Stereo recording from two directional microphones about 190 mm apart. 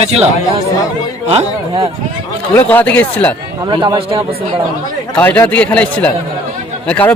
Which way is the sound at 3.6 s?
20° right (ahead or behind).